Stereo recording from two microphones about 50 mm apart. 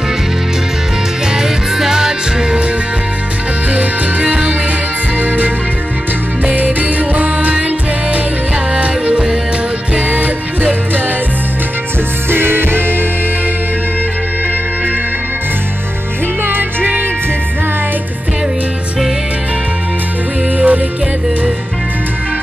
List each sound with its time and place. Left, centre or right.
1.3 s music: centre
3.7 s music: right
5.2 s music: right
8.7 s music: right
9.9 s music: right
12.3 s music: right
16.4 s music: right
20.5 s music: right